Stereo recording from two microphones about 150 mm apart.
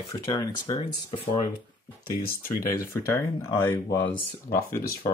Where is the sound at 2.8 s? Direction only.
15° left (ahead or behind).